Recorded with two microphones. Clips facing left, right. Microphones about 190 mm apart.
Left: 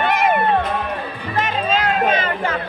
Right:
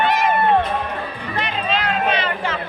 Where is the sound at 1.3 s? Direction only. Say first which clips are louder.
Left 3 dB; 45° left (ahead or behind).